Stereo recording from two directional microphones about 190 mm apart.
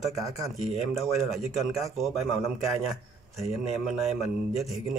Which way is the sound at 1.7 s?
Centre (ahead or behind).